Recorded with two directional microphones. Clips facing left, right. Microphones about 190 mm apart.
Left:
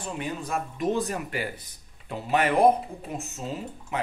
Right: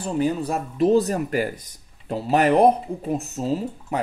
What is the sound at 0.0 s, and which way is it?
Speech, 35° right (ahead or behind).